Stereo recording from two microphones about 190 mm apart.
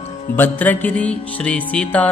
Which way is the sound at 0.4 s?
10° left (ahead or behind).